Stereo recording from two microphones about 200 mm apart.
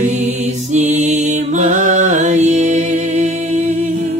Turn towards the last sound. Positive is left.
turn(degrees=-35)  # may be behind; listen again after turning